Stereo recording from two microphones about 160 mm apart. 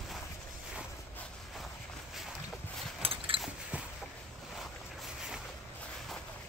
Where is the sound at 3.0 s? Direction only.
35° right (ahead or behind).